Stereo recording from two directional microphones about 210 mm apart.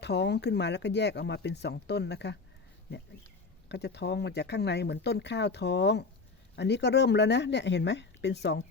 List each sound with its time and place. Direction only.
0.0 s speech: 55° left (ahead or behind)
3.7 s speech: 55° left (ahead or behind)